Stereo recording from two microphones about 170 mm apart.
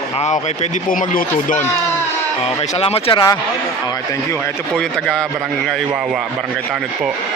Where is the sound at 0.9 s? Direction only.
50° left (ahead or behind).